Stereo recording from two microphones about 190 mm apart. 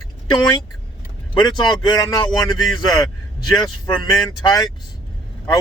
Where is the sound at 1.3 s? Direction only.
20° left (ahead or behind).